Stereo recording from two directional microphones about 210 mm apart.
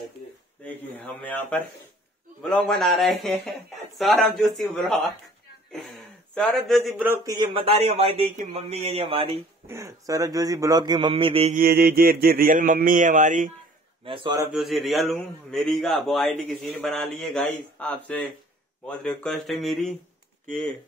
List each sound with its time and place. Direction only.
0.9 s a man's voice: 5° left (ahead or behind); by 7.3 s 10° right (ahead or behind)
7.3 s speech: 30° right (ahead or behind)
9.7 s speech: 15° right (ahead or behind)
11.6 s speech: 45° right (ahead or behind)
14.0 s speech: 25° right (ahead or behind)
14.5 s a man's voice: centre (ahead or behind)